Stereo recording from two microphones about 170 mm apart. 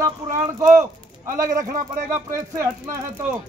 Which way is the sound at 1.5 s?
50° right (ahead or behind).